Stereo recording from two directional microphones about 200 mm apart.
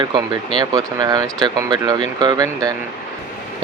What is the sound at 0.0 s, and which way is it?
Speech, 25° right (ahead or behind).